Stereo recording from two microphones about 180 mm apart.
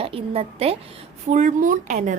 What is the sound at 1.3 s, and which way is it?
Speech, 45° right (ahead or behind).